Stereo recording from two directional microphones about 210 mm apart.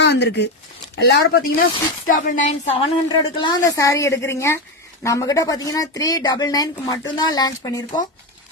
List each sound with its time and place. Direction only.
0.0 s speech: 55° left (ahead or behind)
2.0 s a woman's voice: 40° left (ahead or behind)
3.1 s speech: 20° left (ahead or behind)